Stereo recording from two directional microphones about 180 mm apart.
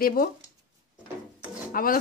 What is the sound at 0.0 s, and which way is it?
Speech, 55° left (ahead or behind).